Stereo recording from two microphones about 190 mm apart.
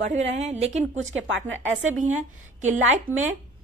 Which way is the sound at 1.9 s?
40° right (ahead or behind).